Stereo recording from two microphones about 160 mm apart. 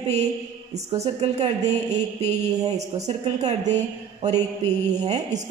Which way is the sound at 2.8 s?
45° right (ahead or behind).